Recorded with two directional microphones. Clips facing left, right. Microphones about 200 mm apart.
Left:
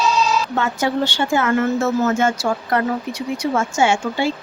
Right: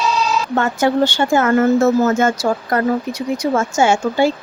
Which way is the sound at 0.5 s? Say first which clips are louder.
Right 8 dB; 50° right (ahead or behind).